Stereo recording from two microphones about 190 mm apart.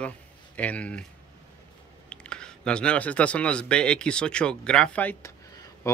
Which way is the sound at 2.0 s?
5° left (ahead or behind).